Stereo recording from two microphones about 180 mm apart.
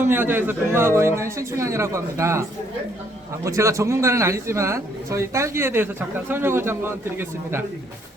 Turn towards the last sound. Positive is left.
turn(degrees=-10)  # may be behind; listen again after turning